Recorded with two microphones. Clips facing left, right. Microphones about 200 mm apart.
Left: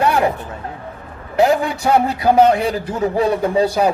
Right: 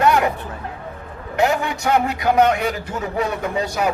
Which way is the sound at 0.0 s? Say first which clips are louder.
Left 1 dB; 30° left (ahead or behind).